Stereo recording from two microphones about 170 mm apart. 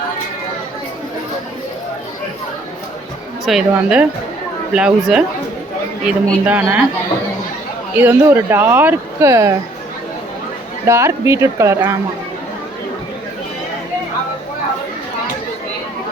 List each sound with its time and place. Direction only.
3.4 s speech: 5° right (ahead or behind)
7.9 s speech: 10° right (ahead or behind)
10.8 s speech: 15° right (ahead or behind)